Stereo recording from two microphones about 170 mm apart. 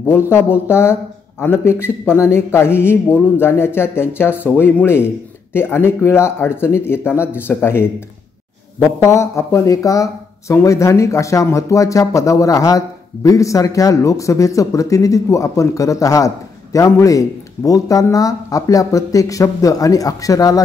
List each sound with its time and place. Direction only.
0.3 s speech: 15° left (ahead or behind)
9.0 s speech: 15° left (ahead or behind)